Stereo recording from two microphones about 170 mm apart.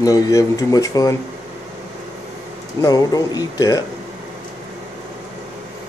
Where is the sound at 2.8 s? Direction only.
20° left (ahead or behind).